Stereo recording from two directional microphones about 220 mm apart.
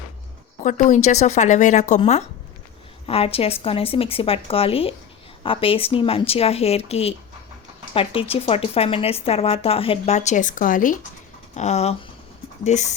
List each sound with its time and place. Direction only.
0.6 s a woman's voice: 35° left (ahead or behind)